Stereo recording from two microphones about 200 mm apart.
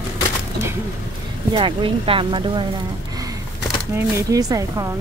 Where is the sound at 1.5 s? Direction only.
25° right (ahead or behind).